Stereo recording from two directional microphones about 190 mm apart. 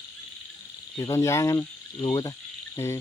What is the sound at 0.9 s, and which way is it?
Speech, 15° left (ahead or behind).